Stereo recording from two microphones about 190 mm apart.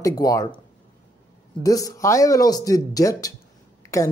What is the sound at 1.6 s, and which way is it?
Speech, 20° left (ahead or behind).